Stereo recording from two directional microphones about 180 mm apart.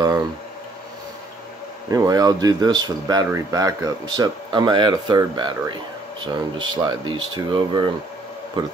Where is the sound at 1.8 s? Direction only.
20° right (ahead or behind).